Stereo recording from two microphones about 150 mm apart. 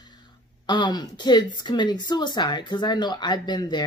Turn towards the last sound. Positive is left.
turn(degrees=30)  # may be behind; listen again after turning